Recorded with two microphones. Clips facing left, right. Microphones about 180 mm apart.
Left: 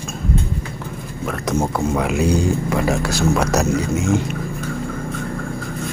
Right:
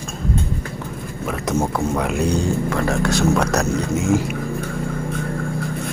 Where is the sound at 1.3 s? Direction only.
Centre (ahead or behind).